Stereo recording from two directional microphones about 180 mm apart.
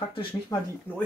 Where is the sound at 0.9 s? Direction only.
10° left (ahead or behind).